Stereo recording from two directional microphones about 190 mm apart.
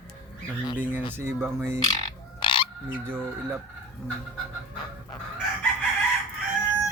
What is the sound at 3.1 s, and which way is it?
Speech, 10° right (ahead or behind).